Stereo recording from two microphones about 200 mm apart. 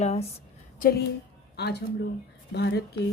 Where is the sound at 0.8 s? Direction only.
50° left (ahead or behind).